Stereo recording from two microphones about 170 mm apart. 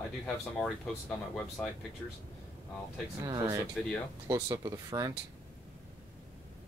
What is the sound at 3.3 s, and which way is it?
Speech, 20° right (ahead or behind).